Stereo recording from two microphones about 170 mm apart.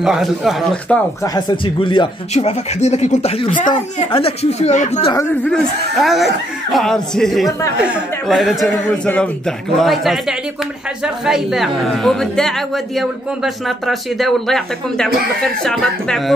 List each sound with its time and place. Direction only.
0.0 s a man's voice: centre (ahead or behind)
1.2 s speech: 25° left (ahead or behind); by 5.1 s 45° left (ahead or behind)
5.5 s a man's voice: centre (ahead or behind)